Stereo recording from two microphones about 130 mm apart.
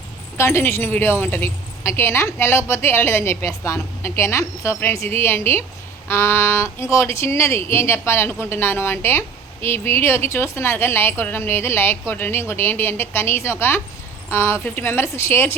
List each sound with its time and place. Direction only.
0.3 s a woman's voice: 20° left (ahead or behind)